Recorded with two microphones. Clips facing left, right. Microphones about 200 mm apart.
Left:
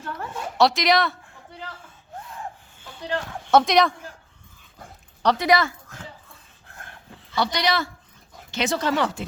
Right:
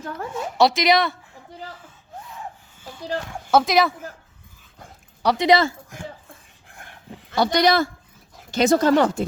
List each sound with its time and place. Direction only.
0.0 s speech: 40° right (ahead or behind)
0.3 s speech: centre (ahead or behind)
3.5 s speech: 5° right (ahead or behind)
5.2 s speech: 10° right (ahead or behind)
5.5 s speech: 25° right (ahead or behind)
6.7 s dog: 15° right (ahead or behind)
7.3 s speech: 45° right (ahead or behind)